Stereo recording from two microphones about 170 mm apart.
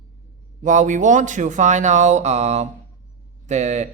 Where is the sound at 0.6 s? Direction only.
50° right (ahead or behind).